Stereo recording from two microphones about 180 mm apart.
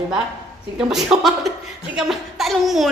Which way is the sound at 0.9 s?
Centre (ahead or behind).